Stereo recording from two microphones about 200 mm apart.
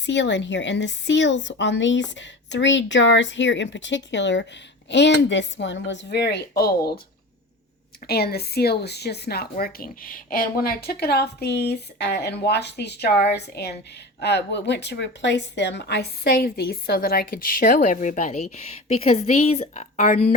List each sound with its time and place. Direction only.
0.0 s a woman's voice: 65° left (ahead or behind)
8.0 s a woman's voice: 50° left (ahead or behind); by 20.3 s 35° left (ahead or behind)